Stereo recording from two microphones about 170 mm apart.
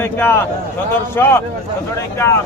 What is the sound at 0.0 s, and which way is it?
Speech, 15° left (ahead or behind).